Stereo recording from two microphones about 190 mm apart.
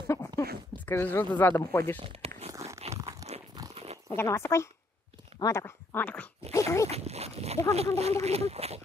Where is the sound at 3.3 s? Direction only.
35° right (ahead or behind).